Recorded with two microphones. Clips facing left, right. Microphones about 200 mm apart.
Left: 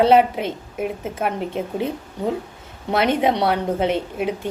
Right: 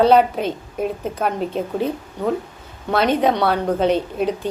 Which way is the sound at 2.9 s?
20° left (ahead or behind).